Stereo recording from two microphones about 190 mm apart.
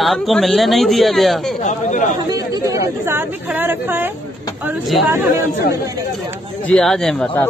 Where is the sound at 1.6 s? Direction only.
40° left (ahead or behind).